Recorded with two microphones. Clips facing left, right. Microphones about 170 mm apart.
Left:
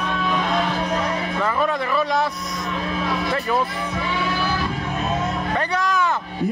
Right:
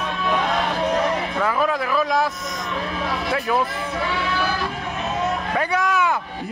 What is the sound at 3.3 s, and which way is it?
Speech, 5° right (ahead or behind).